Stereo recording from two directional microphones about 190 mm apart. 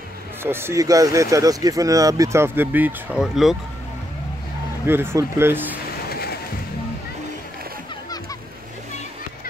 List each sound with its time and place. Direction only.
0.4 s speech: 10° right (ahead or behind)
4.8 s speech: 10° right (ahead or behind)
6.0 s music: 55° left (ahead or behind)